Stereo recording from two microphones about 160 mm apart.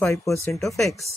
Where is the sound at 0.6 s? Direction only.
Centre (ahead or behind).